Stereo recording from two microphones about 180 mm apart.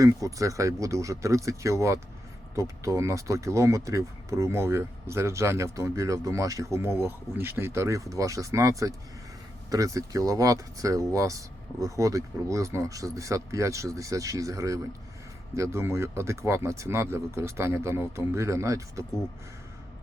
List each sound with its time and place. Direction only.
0.0 s speech: 20° right (ahead or behind)